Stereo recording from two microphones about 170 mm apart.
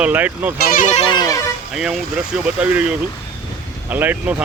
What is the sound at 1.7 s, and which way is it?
Speech, 5° right (ahead or behind).